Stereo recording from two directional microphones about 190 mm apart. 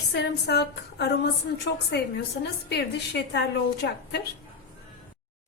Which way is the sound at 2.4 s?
60° left (ahead or behind).